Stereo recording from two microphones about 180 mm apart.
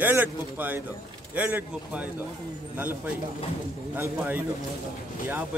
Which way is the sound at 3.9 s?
10° right (ahead or behind).